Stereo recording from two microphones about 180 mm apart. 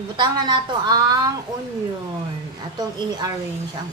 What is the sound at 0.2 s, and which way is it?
A woman's voice, 25° right (ahead or behind).